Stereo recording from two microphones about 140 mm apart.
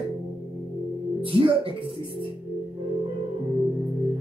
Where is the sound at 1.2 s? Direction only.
40° right (ahead or behind).